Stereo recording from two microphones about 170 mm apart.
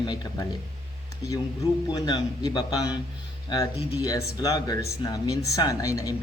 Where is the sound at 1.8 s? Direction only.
25° left (ahead or behind).